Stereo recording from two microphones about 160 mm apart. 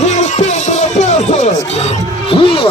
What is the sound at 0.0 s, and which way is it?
Music, 45° left (ahead or behind).